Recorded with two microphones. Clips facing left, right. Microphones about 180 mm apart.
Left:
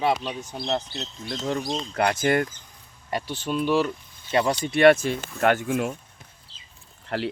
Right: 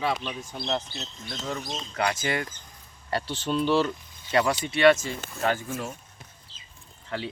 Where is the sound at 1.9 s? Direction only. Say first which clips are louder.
Left 5 dB; 55° left (ahead or behind).